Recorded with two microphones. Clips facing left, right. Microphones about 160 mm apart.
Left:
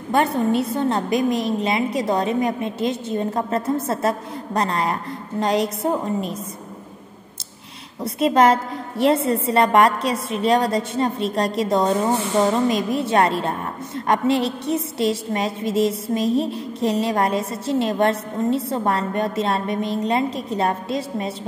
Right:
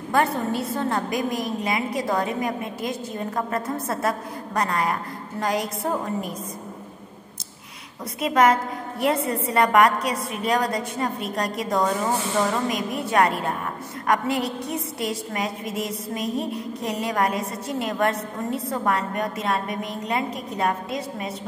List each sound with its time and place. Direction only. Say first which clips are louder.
0.1 s a woman's voice: left 4 dB; 20° left (ahead or behind)
8.0 s a woman's voice: left 3 dB; 30° left (ahead or behind)